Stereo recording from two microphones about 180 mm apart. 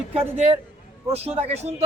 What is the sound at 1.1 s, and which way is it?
Speech, 35° right (ahead or behind).